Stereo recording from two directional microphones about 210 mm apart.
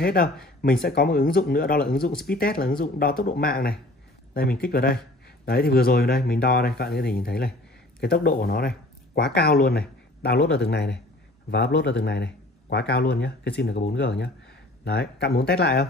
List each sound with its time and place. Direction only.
0.0 s speech: 45° left (ahead or behind)